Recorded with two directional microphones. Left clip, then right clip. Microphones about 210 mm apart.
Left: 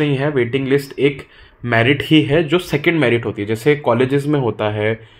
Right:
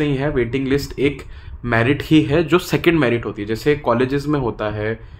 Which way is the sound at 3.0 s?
10° right (ahead or behind).